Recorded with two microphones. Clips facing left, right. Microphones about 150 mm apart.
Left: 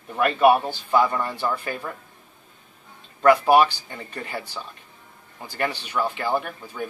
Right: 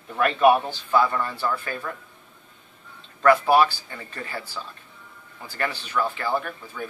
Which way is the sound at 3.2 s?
15° left (ahead or behind).